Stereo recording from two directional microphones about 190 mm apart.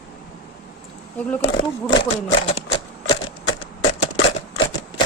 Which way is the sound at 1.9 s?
25° left (ahead or behind).